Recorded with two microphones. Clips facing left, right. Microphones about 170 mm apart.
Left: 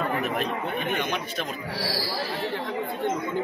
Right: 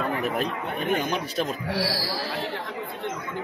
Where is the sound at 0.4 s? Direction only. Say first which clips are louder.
Even; 40° right (ahead or behind).